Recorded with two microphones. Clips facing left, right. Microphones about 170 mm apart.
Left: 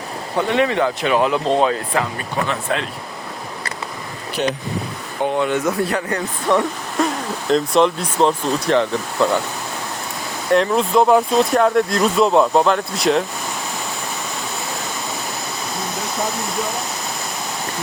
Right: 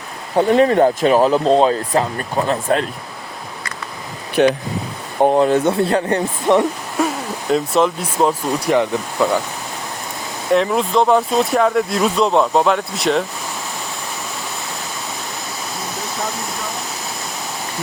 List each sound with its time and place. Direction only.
0.3 s speech: 40° right (ahead or behind)
2.1 s speech: 45° right (ahead or behind)
4.4 s speech: 65° right (ahead or behind)
5.2 s speech: 35° right (ahead or behind)
6.6 s speech: 10° right (ahead or behind)
10.5 s speech: centre (ahead or behind)